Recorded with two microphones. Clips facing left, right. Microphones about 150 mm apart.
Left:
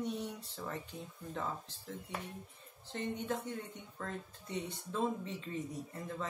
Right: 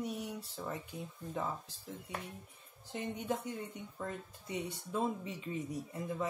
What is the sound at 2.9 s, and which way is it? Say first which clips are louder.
Speech: even; 10° right (ahead or behind).